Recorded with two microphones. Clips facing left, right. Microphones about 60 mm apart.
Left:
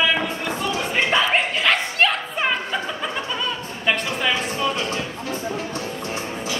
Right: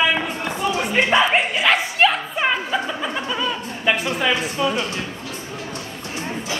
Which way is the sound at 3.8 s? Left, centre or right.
Centre.